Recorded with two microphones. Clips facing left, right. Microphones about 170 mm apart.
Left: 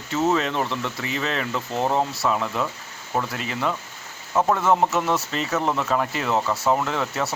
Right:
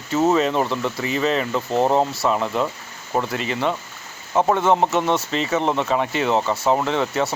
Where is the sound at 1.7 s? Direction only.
30° right (ahead or behind).